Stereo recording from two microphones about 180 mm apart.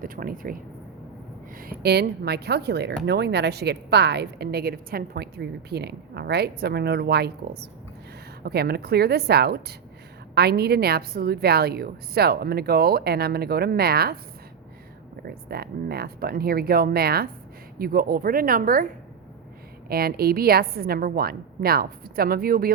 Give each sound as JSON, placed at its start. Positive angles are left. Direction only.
{"t": 0.0, "sound": "a woman's voice", "side_deg": -55}
{"t": 15.4, "sound": "a woman's voice", "side_deg": -60}
{"t": 19.9, "sound": "a woman's voice", "side_deg": -55}